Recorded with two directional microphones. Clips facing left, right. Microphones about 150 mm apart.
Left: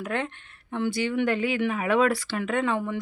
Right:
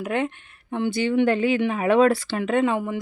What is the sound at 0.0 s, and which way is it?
Speech, 15° right (ahead or behind).